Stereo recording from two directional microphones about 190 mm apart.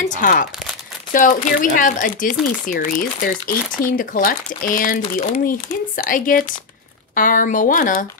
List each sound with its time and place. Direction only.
0.0 s crumpling: 45° left (ahead or behind)
1.1 s speech: 45° left (ahead or behind)